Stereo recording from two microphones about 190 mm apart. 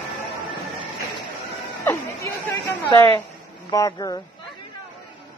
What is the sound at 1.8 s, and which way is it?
Chatter, 15° left (ahead or behind).